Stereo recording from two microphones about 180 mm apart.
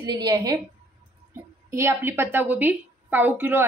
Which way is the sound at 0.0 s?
20° right (ahead or behind).